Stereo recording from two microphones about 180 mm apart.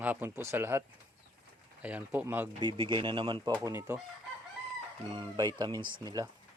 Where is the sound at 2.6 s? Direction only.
25° right (ahead or behind).